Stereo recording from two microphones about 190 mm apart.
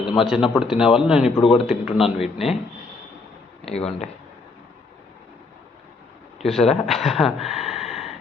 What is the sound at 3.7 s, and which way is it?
Speech, 35° left (ahead or behind).